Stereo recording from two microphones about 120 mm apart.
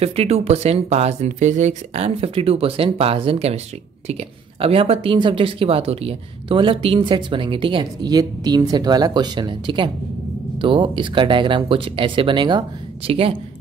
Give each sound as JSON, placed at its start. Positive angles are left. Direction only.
{"t": 0.0, "sound": "speech", "side_deg": -55}
{"t": 8.1, "sound": "speech", "side_deg": -35}